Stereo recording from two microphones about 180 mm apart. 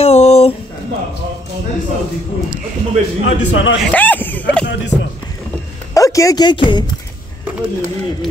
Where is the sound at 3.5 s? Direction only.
90° left.